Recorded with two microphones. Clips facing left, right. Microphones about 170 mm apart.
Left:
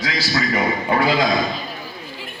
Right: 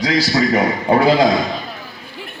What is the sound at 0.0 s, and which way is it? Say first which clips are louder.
A man's voice: right 7 dB; 35° right (ahead or behind).